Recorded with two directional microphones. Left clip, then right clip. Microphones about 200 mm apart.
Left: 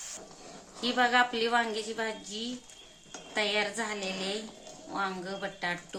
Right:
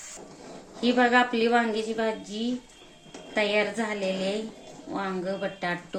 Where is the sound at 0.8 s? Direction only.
5° left (ahead or behind).